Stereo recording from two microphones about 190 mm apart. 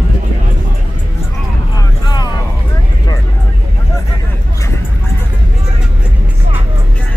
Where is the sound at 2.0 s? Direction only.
20° left (ahead or behind).